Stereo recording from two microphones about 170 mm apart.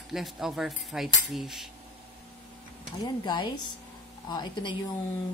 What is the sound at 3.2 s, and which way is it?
Speech, 25° left (ahead or behind).